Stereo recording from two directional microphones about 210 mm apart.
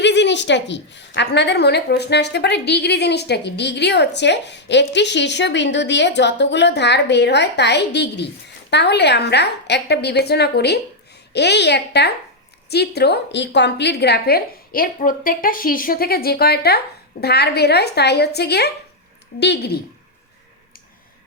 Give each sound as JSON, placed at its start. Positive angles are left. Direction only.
{"t": 0.0, "sound": "a woman's voice", "side_deg": 55}